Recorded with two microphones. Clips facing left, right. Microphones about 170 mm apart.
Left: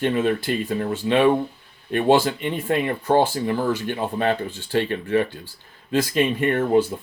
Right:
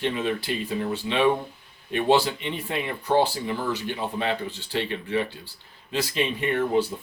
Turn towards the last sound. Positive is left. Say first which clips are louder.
# left 4 dB
turn(degrees=50)  # may be behind; listen again after turning